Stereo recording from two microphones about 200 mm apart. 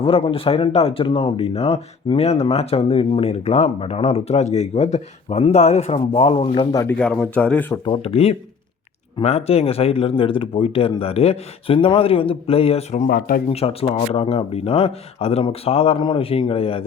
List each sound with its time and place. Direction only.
0.0 s speech: 30° left (ahead or behind)
6.8 s speech: 5° left (ahead or behind)
7.9 s speech: 30° left (ahead or behind)
13.1 s speech: 45° left (ahead or behind)
13.5 s speech: 30° left (ahead or behind)